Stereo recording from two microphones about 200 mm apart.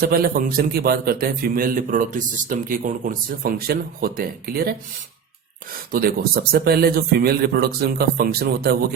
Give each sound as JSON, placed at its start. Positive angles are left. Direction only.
{"t": 0.0, "sound": "a man's voice", "side_deg": -50}
{"t": 5.9, "sound": "a man's voice", "side_deg": -50}